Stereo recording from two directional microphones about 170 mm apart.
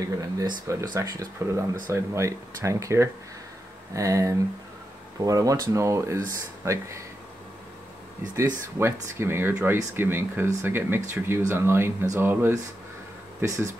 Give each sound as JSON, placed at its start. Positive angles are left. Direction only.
{"t": 0.0, "sound": "speech", "side_deg": -20}
{"t": 8.4, "sound": "speech", "side_deg": -15}